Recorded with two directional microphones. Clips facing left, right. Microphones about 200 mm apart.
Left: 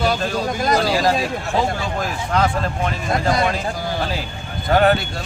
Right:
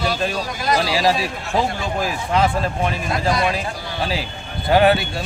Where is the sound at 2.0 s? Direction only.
10° right (ahead or behind).